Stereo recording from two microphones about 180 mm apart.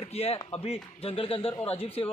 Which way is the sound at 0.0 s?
35° left (ahead or behind).